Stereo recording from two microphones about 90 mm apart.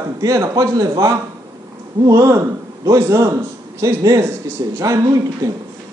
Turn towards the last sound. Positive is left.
turn(degrees=-40)  # may be behind; listen again after turning